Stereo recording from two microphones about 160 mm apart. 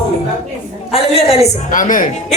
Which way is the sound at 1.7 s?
55° left (ahead or behind).